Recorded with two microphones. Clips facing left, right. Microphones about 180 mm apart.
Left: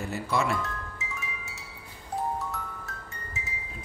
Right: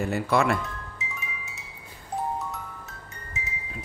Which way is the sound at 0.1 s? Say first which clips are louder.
Right 4 dB; 60° right (ahead or behind).